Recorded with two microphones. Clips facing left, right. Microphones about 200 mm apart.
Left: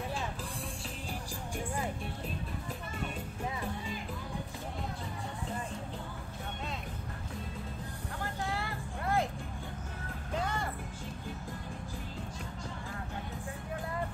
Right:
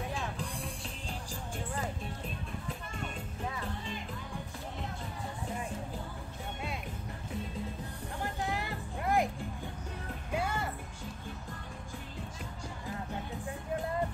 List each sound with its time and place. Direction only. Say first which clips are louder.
8.2 s music: right 1 dB; 15° right (ahead or behind)
10.3 s music: right 1 dB; 10° right (ahead or behind)